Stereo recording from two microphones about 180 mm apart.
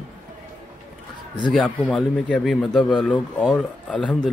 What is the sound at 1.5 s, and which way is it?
Speech, centre (ahead or behind).